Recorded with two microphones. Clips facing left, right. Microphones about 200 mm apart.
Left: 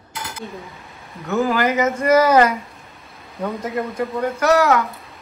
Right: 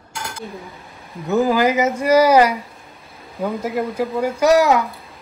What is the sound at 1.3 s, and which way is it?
Speech, 15° right (ahead or behind).